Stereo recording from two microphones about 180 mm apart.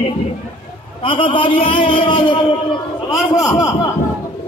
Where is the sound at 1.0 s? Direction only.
25° left (ahead or behind).